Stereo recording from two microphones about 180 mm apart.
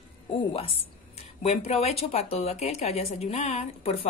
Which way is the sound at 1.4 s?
35° left (ahead or behind).